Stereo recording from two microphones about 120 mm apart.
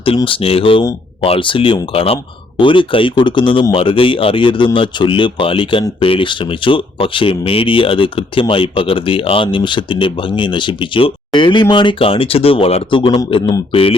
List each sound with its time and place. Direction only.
0.3 s speech: 50° left (ahead or behind)